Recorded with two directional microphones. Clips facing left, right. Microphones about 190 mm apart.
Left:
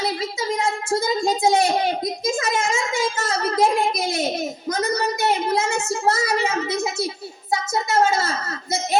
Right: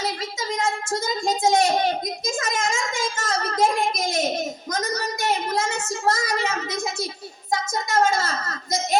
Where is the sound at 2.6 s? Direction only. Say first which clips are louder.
Left 3 dB; 10° left (ahead or behind).